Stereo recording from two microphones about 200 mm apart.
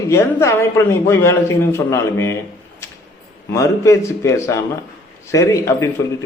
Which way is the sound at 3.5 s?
15° left (ahead or behind).